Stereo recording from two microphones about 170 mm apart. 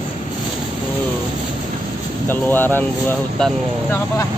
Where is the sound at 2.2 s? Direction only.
10° left (ahead or behind).